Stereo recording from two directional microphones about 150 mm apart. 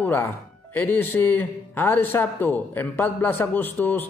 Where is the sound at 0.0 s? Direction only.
15° left (ahead or behind).